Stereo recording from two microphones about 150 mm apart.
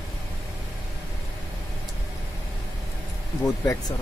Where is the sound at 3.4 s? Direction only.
20° left (ahead or behind).